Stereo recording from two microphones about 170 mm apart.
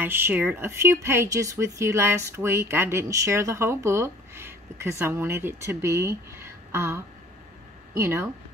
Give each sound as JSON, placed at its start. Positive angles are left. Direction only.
{"t": 0.0, "sound": "speech", "side_deg": -10}